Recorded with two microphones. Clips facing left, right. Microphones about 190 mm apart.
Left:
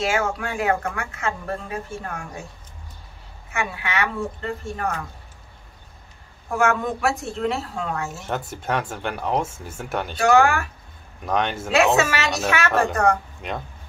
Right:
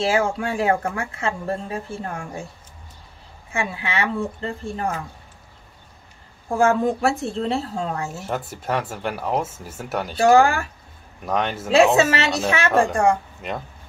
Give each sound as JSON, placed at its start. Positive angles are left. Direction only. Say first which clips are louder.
{"t": 0.0, "sound": "a woman's voice", "louder": "right 3 dB", "side_deg": -30}
{"t": 3.5, "sound": "a woman's voice", "louder": "right 1 dB", "side_deg": -30}
{"t": 6.5, "sound": "speech", "louder": "right 3 dB", "side_deg": -30}
{"t": 8.5, "sound": "speech", "louder": "even", "side_deg": -5}
{"t": 10.1, "sound": "speech", "louder": "right 2 dB", "side_deg": -30}
{"t": 11.2, "sound": "speech", "louder": "even", "side_deg": -5}
{"t": 11.7, "sound": "a woman's voice", "louder": "right 4 dB", "side_deg": -30}
{"t": 13.4, "sound": "speech", "louder": "right 1 dB", "side_deg": 0}